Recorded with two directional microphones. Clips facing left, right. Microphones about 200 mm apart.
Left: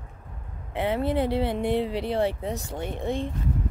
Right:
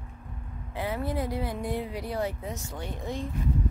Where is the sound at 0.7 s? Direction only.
25° left (ahead or behind).